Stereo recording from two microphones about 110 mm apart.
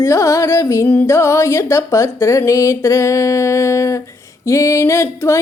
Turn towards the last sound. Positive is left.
turn(degrees=25)  # may be behind; listen again after turning